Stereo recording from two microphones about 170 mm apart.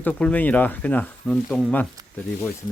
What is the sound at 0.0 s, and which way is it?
Speech, 10° left (ahead or behind).